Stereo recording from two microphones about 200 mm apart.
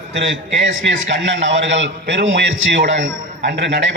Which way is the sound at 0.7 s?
65° right (ahead or behind).